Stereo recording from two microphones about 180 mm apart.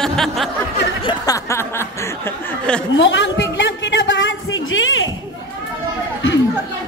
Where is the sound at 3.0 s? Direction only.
90° left.